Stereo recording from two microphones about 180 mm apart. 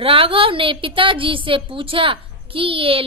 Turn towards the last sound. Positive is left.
turn(degrees=-30)  # may be behind; listen again after turning